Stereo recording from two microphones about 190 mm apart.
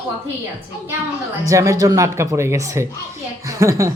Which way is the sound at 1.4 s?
15° right (ahead or behind).